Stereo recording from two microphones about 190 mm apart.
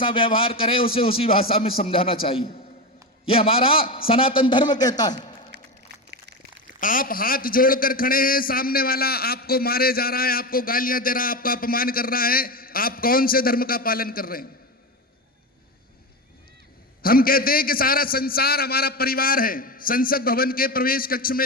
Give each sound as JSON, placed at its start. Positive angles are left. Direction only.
{"t": 0.0, "sound": "a man's voice", "side_deg": 25}
{"t": 5.5, "sound": "a sound", "side_deg": -65}
{"t": 6.7, "sound": "a man's voice", "side_deg": 45}
{"t": 17.0, "sound": "a man's voice", "side_deg": 50}